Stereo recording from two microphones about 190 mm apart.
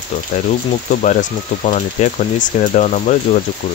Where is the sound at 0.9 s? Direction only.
40° left (ahead or behind).